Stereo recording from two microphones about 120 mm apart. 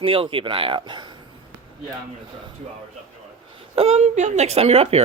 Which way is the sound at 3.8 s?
70° right (ahead or behind).